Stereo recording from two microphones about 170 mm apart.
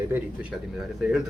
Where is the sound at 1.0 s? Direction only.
5° right (ahead or behind).